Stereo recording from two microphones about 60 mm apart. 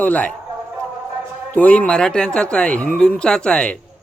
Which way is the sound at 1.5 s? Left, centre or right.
Left.